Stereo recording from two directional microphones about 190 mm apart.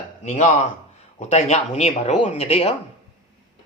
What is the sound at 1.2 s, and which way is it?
Speech, 40° left (ahead or behind).